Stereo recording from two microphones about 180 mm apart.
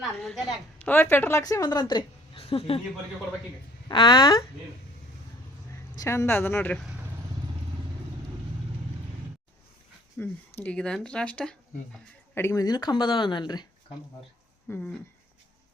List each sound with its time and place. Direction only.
0.0 s a woman's voice: centre (ahead or behind); by 2.8 s 30° left (ahead or behind)
3.8 s speech: 25° left (ahead or behind)
6.0 s speech: 15° left (ahead or behind)
10.2 s speech: 10° left (ahead or behind)
14.7 s speech: 10° left (ahead or behind)